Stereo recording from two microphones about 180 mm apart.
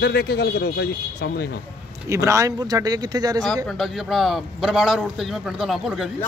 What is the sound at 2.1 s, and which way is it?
Speech, 15° right (ahead or behind).